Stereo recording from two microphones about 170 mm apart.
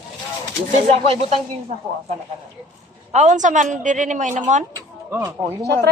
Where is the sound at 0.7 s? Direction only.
40° right (ahead or behind).